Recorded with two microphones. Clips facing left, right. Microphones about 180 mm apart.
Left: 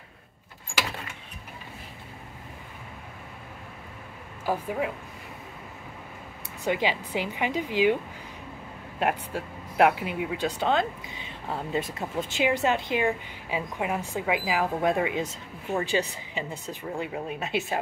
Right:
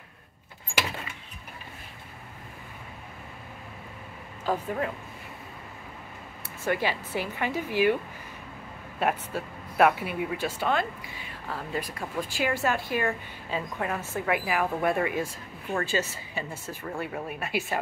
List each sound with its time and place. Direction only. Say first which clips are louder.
4.5 s speech: left 1 dB; 10° left (ahead or behind)
6.6 s speech: left 1 dB; 15° left (ahead or behind)
9.0 s speech: even; 15° left (ahead or behind)